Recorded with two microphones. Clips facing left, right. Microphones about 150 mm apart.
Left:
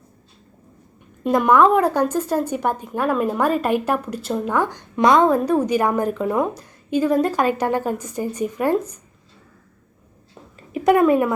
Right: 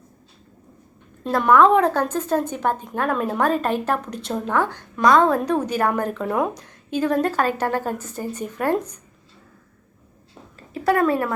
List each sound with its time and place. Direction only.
1.2 s a woman's voice: 10° left (ahead or behind)
5.3 s a woman's voice: 10° left (ahead or behind)
10.8 s a woman's voice: 15° left (ahead or behind)